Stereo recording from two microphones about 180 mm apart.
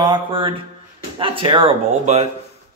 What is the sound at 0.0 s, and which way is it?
A man's voice, 25° right (ahead or behind).